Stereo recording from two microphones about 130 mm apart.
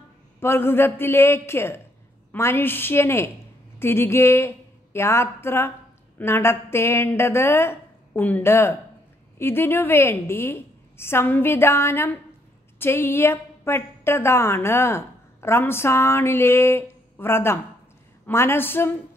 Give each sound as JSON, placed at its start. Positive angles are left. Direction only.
{"t": 0.4, "sound": "a woman's voice", "side_deg": 20}